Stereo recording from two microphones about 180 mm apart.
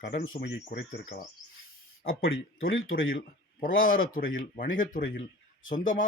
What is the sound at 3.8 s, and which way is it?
Speech, 50° left (ahead or behind).